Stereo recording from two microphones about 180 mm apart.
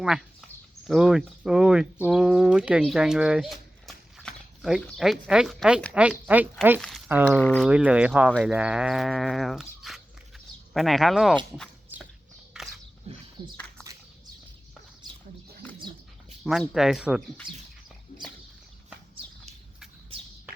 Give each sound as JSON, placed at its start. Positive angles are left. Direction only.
{"t": 0.0, "sound": "speech", "side_deg": -5}
{"t": 7.7, "sound": "speech", "side_deg": -5}
{"t": 13.4, "sound": "speech", "side_deg": -20}
{"t": 16.4, "sound": "speech", "side_deg": 0}
{"t": 18.1, "sound": "a sound", "side_deg": 30}